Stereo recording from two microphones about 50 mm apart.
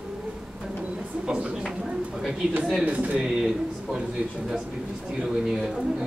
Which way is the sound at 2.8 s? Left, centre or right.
Right.